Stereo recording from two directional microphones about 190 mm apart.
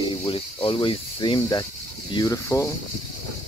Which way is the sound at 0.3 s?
30° left (ahead or behind).